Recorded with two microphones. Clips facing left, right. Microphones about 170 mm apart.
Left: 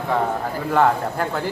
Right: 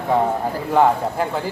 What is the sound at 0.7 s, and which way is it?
Speech, 10° right (ahead or behind).